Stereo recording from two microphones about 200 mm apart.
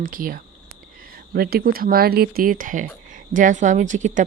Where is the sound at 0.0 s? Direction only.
45° right (ahead or behind).